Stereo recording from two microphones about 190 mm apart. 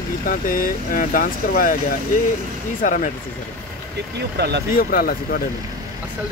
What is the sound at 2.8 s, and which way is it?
Speech, 45° left (ahead or behind).